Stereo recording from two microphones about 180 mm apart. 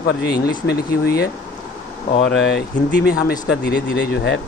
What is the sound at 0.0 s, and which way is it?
Speech, 65° left (ahead or behind).